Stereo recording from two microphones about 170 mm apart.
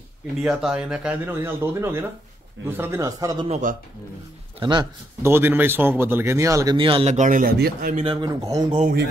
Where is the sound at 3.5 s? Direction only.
45° right (ahead or behind).